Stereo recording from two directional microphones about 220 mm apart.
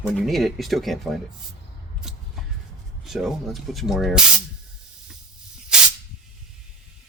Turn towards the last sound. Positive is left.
turn(degrees=-5)  # may be behind; listen again after turning